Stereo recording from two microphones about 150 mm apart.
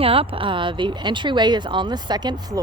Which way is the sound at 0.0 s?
40° right (ahead or behind).